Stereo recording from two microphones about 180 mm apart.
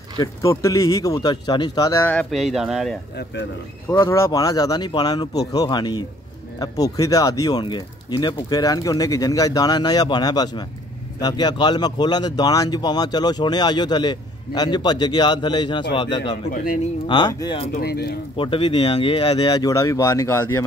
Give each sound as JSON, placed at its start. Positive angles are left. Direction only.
{"t": 0.2, "sound": "speech", "side_deg": 15}
{"t": 4.0, "sound": "speech", "side_deg": 15}
{"t": 17.7, "sound": "speech", "side_deg": 60}
{"t": 18.3, "sound": "speech", "side_deg": 30}